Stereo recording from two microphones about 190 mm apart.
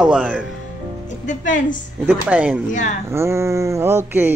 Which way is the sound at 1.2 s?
40° left (ahead or behind).